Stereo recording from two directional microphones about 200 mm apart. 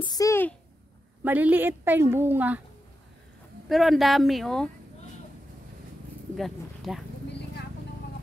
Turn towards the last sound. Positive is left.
turn(degrees=0)  # may be behind; listen again after turning